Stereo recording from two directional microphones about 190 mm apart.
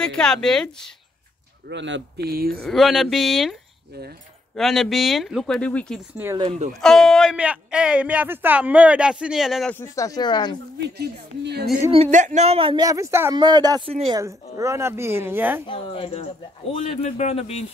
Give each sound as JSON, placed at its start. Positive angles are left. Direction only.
{"t": 0.0, "sound": "speech", "side_deg": 5}
{"t": 1.7, "sound": "speech", "side_deg": -70}
{"t": 2.6, "sound": "speech", "side_deg": 0}
{"t": 4.6, "sound": "speech", "side_deg": 0}
{"t": 6.1, "sound": "speech", "side_deg": -10}
{"t": 6.4, "sound": "speech", "side_deg": -35}
{"t": 6.8, "sound": "speech", "side_deg": 0}
{"t": 9.8, "sound": "speech", "side_deg": 15}
{"t": 10.8, "sound": "speech", "side_deg": -60}
{"t": 11.9, "sound": "speech", "side_deg": -35}
{"t": 14.2, "sound": "speech", "side_deg": -15}
{"t": 15.6, "sound": "speech", "side_deg": 25}